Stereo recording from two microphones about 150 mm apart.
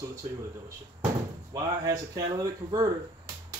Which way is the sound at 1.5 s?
25° right (ahead or behind).